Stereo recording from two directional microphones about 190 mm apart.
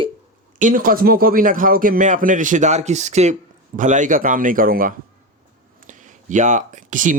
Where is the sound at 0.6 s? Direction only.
45° right (ahead or behind).